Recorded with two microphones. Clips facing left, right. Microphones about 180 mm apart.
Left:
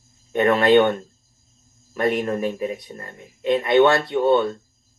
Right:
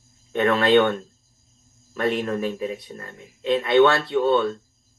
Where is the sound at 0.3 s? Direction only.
15° left (ahead or behind).